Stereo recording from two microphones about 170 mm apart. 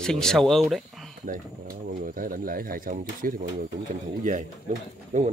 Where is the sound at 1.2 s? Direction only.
55° right (ahead or behind).